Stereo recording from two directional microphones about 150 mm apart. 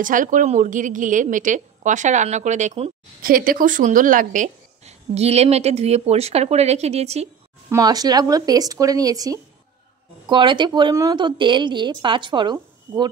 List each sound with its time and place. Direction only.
0.0 s a woman's voice: 60° right (ahead or behind)
3.2 s a woman's voice: 70° right (ahead or behind); by 7.2 s 45° right (ahead or behind)
7.7 s speech: 25° right (ahead or behind)